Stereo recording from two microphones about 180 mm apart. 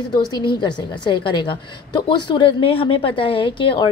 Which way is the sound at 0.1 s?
20° left (ahead or behind).